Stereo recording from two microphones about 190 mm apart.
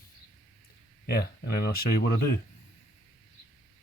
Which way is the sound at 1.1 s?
55° left (ahead or behind).